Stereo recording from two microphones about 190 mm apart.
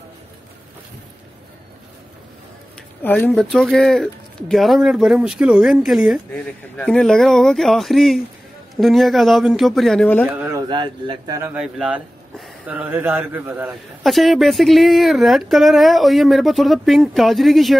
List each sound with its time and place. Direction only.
3.0 s speech: 10° left (ahead or behind)
10.3 s speech: 10° right (ahead or behind)
10.6 s a man's voice: 25° right (ahead or behind)
11.5 s speech: 5° right (ahead or behind)